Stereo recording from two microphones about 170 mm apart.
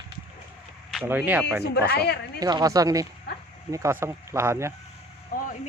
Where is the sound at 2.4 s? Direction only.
25° right (ahead or behind).